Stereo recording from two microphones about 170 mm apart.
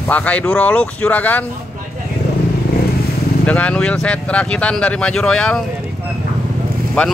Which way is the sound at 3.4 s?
5° left (ahead or behind).